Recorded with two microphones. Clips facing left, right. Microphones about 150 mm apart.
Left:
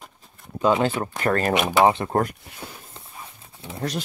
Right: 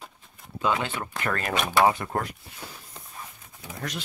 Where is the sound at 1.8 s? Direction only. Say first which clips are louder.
Left 3 dB; 25° left (ahead or behind).